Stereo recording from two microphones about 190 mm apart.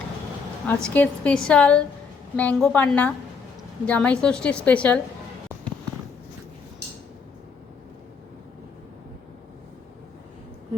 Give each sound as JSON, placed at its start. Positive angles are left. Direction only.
{"t": 0.7, "sound": "a woman's voice", "side_deg": 5}